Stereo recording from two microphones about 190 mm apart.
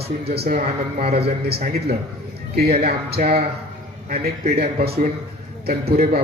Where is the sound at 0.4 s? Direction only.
35° right (ahead or behind).